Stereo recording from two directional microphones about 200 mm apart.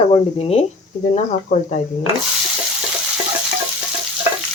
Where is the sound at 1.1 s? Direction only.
40° left (ahead or behind).